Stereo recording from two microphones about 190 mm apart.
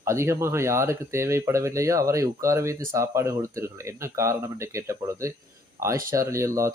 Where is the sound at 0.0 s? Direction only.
15° right (ahead or behind).